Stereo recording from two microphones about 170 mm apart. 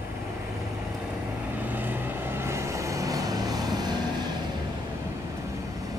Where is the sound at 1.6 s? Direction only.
10° right (ahead or behind).